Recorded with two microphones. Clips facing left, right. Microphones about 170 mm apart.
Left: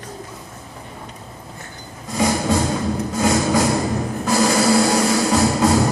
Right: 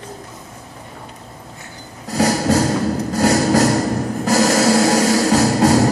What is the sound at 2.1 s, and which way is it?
Music, 85° right.